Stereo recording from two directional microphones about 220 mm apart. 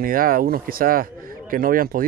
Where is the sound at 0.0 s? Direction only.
40° right (ahead or behind).